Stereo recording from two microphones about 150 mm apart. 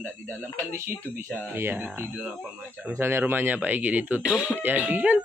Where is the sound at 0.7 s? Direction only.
15° right (ahead or behind).